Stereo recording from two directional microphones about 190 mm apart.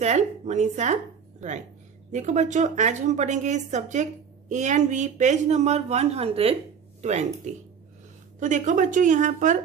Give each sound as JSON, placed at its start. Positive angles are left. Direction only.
{"t": 0.0, "sound": "a woman's voice", "side_deg": -40}
{"t": 2.1, "sound": "a woman's voice", "side_deg": -40}